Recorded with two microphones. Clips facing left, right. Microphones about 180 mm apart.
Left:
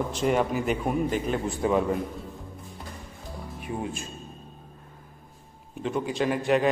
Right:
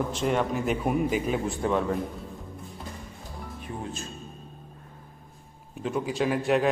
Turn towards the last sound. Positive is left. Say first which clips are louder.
# left 1 dB
turn(degrees=0)  # may be behind; listen again after turning